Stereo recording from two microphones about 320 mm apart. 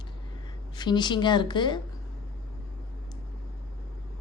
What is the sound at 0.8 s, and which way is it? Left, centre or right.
Speech, centre.